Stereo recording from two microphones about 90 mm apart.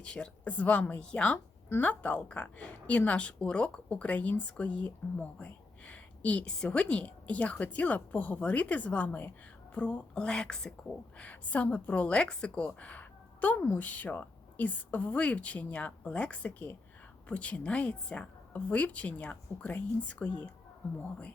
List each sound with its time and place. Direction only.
0.0 s a woman's voice: 10° left (ahead or behind)